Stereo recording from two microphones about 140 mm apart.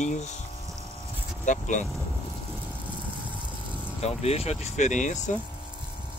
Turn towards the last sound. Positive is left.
turn(degrees=60)  # may be behind; listen again after turning